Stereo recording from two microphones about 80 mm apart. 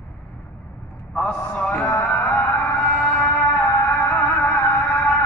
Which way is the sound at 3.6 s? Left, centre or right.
Left.